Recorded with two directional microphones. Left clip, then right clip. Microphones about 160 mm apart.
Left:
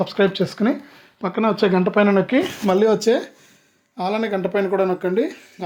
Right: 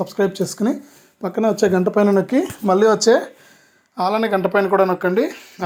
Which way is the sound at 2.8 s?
15° left (ahead or behind).